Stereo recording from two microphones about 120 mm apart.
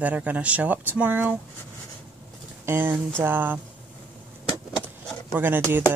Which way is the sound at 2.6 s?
15° right (ahead or behind).